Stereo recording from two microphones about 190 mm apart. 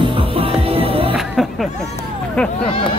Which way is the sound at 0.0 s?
30° right (ahead or behind).